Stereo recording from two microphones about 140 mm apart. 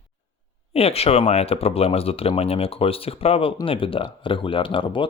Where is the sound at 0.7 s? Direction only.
45° left (ahead or behind).